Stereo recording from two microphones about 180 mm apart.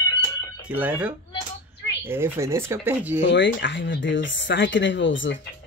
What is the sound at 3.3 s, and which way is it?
Speech, 80° left.